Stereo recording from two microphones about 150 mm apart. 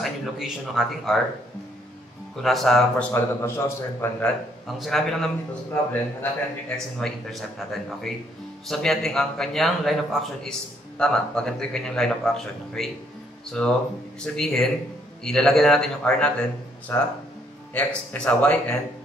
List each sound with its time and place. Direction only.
0.0 s speech: centre (ahead or behind)
2.4 s a man's voice: centre (ahead or behind)
3.1 s a man's voice: 15° left (ahead or behind)
4.6 s a man's voice: centre (ahead or behind)
7.0 s a man's voice: centre (ahead or behind)